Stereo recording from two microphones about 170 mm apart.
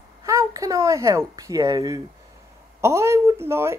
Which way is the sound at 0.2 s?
20° right (ahead or behind).